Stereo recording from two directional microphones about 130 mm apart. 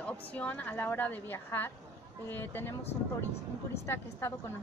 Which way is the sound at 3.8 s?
20° left (ahead or behind).